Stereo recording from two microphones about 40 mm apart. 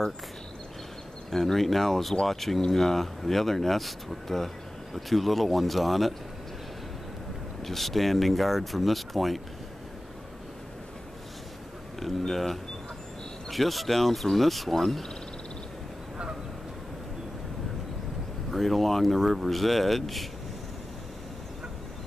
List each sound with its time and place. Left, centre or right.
1.3 s speech: centre
7.6 s speech: centre
12.0 s speech: centre
18.5 s speech: centre